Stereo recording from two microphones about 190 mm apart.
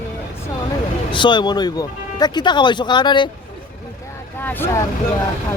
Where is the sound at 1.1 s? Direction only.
25° left (ahead or behind).